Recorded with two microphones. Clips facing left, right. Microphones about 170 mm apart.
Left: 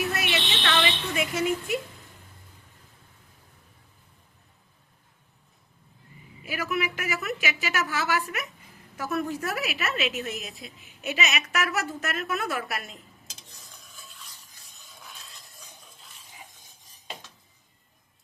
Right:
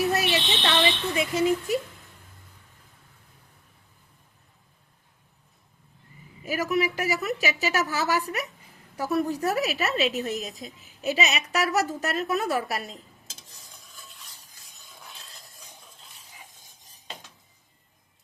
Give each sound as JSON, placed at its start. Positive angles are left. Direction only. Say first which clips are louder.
{"t": 0.0, "sound": "a sound", "louder": "right 4 dB", "side_deg": -35}
{"t": 1.1, "sound": "a woman's voice", "louder": "right 3 dB", "side_deg": -30}
{"t": 6.4, "sound": "a woman's voice", "louder": "right 4 dB", "side_deg": -40}